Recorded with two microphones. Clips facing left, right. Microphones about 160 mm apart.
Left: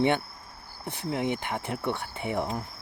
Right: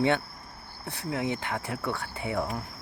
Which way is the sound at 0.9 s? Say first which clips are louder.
Left 1 dB; 20° left (ahead or behind).